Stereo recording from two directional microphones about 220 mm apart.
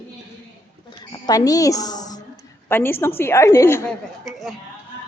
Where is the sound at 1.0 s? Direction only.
20° left (ahead or behind).